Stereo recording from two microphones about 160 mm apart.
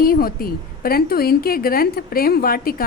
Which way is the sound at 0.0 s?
65° left (ahead or behind).